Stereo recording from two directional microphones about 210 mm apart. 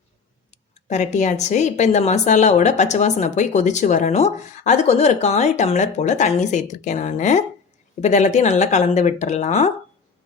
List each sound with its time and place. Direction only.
0.5 s speech: 35° left (ahead or behind)